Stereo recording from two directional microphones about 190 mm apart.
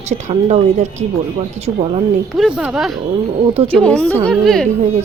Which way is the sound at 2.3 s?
Centre (ahead or behind).